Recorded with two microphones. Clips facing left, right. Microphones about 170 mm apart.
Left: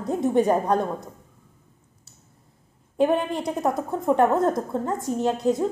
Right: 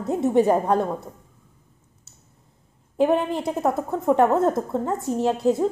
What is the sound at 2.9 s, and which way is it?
A woman's voice, 25° right (ahead or behind).